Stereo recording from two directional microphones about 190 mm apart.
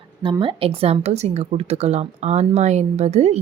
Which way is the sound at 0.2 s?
25° right (ahead or behind).